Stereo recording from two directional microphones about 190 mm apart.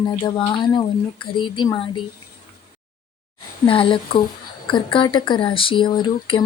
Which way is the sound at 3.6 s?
25° left (ahead or behind).